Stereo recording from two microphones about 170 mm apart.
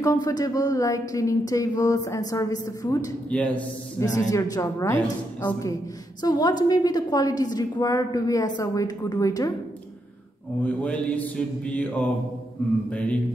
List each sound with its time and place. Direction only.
0.0 s a woman's voice: 20° left (ahead or behind)
3.3 s mantra: 10° left (ahead or behind)
4.0 s a woman's voice: 20° left (ahead or behind)
10.6 s mantra: 10° left (ahead or behind)